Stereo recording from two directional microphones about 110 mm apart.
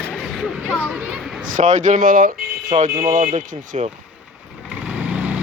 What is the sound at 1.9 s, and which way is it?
Speech, 90° right.